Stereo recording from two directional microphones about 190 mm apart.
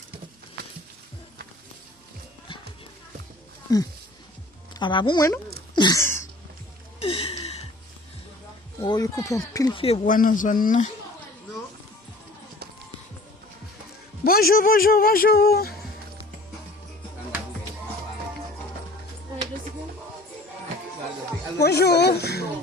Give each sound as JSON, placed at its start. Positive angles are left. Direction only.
{"t": 3.7, "sound": "speech", "side_deg": 20}
{"t": 5.7, "sound": "a sound", "side_deg": 20}
{"t": 7.0, "sound": "gasp", "side_deg": 30}
{"t": 8.8, "sound": "speech", "side_deg": 20}
{"t": 10.1, "sound": "speech", "side_deg": 45}
{"t": 14.3, "sound": "speech", "side_deg": 50}
{"t": 21.6, "sound": "a sound", "side_deg": 60}